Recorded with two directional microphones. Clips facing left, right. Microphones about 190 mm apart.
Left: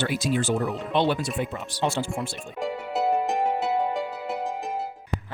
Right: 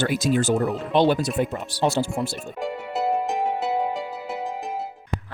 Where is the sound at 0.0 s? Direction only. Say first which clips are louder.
Right 4 dB; 45° right (ahead or behind).